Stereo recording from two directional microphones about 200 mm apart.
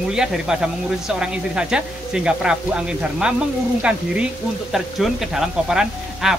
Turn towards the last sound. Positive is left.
turn(degrees=0)  # may be behind; listen again after turning